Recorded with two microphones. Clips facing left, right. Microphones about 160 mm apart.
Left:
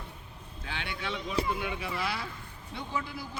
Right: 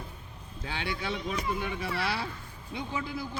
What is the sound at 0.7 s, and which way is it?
Speech, 35° right (ahead or behind).